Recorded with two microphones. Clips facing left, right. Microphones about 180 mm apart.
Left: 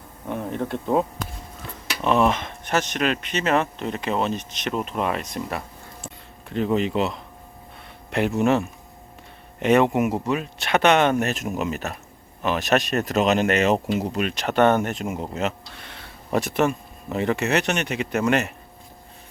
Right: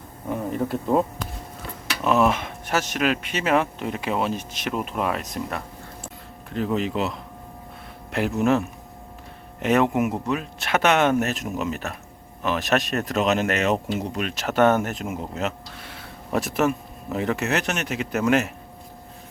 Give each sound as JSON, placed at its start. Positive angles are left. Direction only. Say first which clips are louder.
{"t": 0.3, "sound": "speech", "louder": "right 1 dB", "side_deg": 0}